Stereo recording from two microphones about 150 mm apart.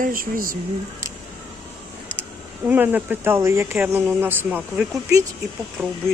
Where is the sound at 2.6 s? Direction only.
10° right (ahead or behind).